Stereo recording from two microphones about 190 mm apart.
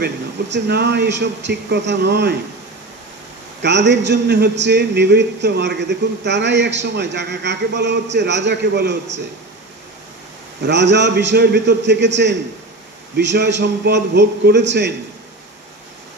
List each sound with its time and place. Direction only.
0.0 s a man's voice: 60° right (ahead or behind)
3.6 s a man's voice: 65° right (ahead or behind)
10.6 s a man's voice: 65° right (ahead or behind)